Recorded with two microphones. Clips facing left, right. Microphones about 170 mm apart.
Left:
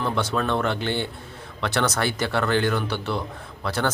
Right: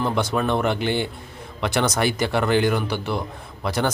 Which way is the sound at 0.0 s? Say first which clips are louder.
Right 2 dB; 15° right (ahead or behind).